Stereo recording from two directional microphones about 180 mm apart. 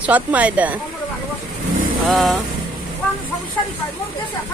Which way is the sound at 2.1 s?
Centre (ahead or behind).